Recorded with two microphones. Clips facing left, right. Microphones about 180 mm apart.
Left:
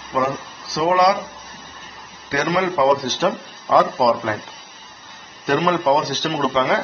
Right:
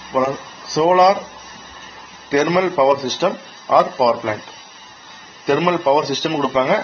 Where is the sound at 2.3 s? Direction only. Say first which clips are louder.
Right 5 dB; 20° right (ahead or behind).